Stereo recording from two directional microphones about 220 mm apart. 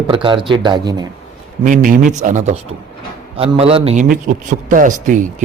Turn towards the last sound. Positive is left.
turn(degrees=-35)  # may be behind; listen again after turning